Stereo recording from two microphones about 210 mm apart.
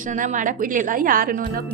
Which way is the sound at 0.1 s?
40° right (ahead or behind).